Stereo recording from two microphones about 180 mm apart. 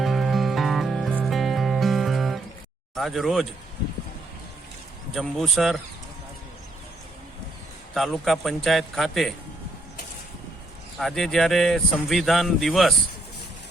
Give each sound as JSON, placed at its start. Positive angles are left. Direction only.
{"t": 0.0, "sound": "music", "side_deg": 0}
{"t": 2.9, "sound": "speech", "side_deg": 0}
{"t": 5.1, "sound": "a man's voice", "side_deg": 0}
{"t": 7.9, "sound": "a man's voice", "side_deg": 0}
{"t": 10.9, "sound": "a man's voice", "side_deg": 0}